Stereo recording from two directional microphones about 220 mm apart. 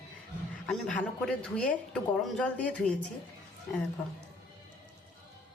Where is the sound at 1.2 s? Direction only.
5° left (ahead or behind).